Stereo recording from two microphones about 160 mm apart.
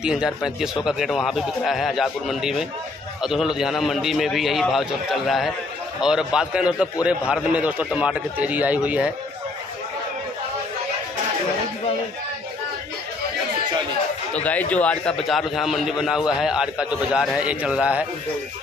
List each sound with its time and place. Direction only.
0.0 s a man's voice: 5° right (ahead or behind)
14.3 s a man's voice: 10° left (ahead or behind); by 18.0 s 5° right (ahead or behind)